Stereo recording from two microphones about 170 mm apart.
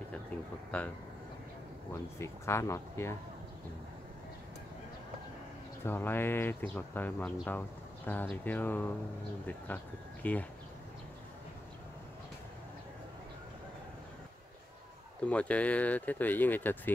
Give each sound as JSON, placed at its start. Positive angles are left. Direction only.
{"t": 2.1, "sound": "speech", "side_deg": 15}
{"t": 5.9, "sound": "speech", "side_deg": 10}
{"t": 10.2, "sound": "speech", "side_deg": 10}
{"t": 15.2, "sound": "speech", "side_deg": 10}